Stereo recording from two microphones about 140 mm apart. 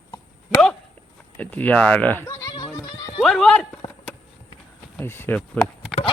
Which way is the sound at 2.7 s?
25° left (ahead or behind).